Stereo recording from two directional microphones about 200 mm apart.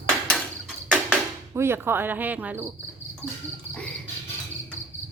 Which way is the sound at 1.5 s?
10° right (ahead or behind).